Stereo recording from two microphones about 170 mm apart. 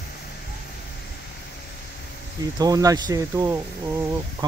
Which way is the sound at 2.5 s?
20° right (ahead or behind).